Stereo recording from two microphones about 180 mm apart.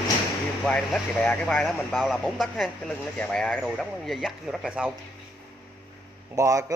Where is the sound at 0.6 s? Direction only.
5° left (ahead or behind).